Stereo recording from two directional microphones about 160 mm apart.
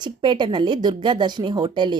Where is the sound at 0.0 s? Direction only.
30° right (ahead or behind).